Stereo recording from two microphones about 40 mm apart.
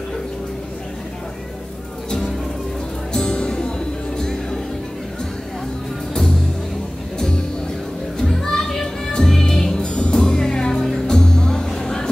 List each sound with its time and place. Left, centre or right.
3.1 s music: centre
7.2 s music: centre
8.2 s children playing: centre
9.1 s music: centre
9.8 s music: left